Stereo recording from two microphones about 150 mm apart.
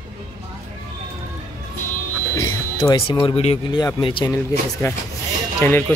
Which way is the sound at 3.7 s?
30° left (ahead or behind).